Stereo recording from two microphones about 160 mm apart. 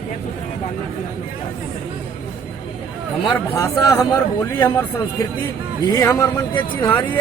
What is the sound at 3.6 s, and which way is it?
Speech, 20° left (ahead or behind).